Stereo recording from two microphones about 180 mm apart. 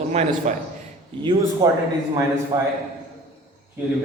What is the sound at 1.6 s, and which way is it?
A man's voice, 20° right (ahead or behind).